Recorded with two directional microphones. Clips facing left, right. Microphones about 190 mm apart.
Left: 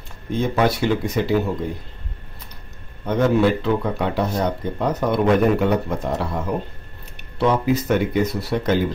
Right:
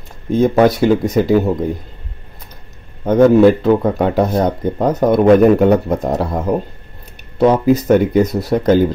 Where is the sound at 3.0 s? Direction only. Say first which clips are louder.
Right 9 dB; 45° right (ahead or behind).